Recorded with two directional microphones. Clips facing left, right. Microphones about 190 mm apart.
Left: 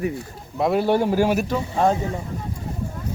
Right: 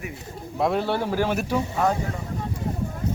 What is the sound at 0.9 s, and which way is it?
Speech, 15° left (ahead or behind).